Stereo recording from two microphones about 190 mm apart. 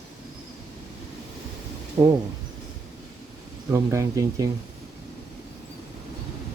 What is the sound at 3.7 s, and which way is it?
Speech, 15° right (ahead or behind).